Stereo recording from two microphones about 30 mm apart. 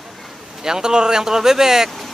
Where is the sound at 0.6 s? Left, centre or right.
Right.